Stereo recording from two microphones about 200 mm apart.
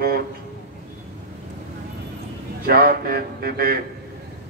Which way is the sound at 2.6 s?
50° right (ahead or behind).